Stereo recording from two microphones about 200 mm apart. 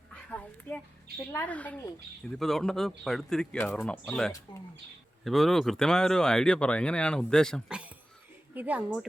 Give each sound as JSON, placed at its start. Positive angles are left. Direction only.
{"t": 0.3, "sound": "a sound", "side_deg": 10}
{"t": 1.3, "sound": "speech", "side_deg": 10}
{"t": 4.5, "sound": "speech", "side_deg": 25}
{"t": 5.2, "sound": "speech", "side_deg": 0}